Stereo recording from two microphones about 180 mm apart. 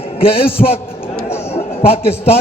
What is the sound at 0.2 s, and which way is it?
A man's voice, 30° left (ahead or behind).